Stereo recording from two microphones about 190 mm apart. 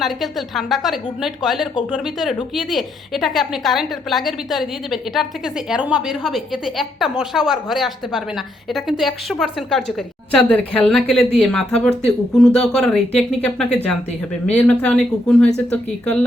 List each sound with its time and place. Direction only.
0.0 s a woman's voice: centre (ahead or behind)